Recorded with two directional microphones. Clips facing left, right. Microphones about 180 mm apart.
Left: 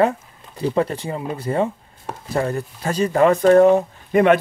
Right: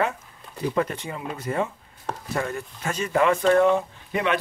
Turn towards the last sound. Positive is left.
turn(degrees=50)  # may be behind; listen again after turning